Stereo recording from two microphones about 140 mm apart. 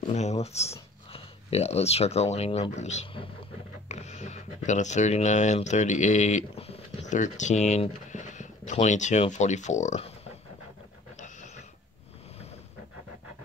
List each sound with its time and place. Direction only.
0.1 s speech: 55° left (ahead or behind)